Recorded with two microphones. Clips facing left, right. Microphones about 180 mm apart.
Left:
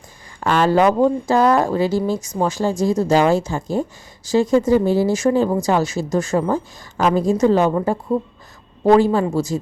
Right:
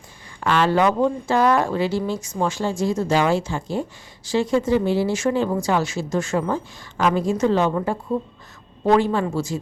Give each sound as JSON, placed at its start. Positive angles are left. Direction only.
{"t": 0.3, "sound": "speech", "side_deg": 45}